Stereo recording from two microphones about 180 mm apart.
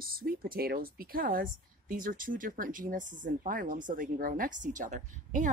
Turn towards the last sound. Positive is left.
turn(degrees=-45)  # may be behind; listen again after turning